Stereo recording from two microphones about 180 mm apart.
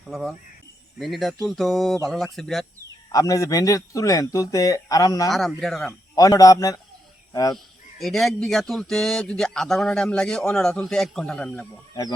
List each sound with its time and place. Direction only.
0.1 s speech: centre (ahead or behind)
3.1 s speech: 20° left (ahead or behind)
5.3 s speech: centre (ahead or behind)
6.1 s speech: 20° left (ahead or behind)
7.5 s speech: centre (ahead or behind)